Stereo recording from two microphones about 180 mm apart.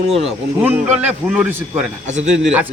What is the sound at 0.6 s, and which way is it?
A man's voice, 10° right (ahead or behind).